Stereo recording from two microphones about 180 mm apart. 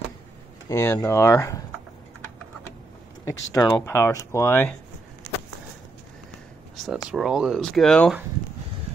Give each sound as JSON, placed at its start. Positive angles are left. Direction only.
{"t": 0.7, "sound": "speech", "side_deg": 15}
{"t": 3.3, "sound": "speech", "side_deg": 15}
{"t": 6.8, "sound": "speech", "side_deg": 0}